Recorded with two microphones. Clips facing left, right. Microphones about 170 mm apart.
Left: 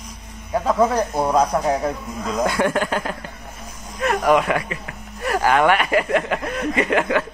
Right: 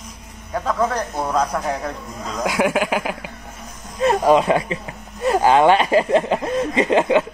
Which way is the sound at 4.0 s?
25° right (ahead or behind).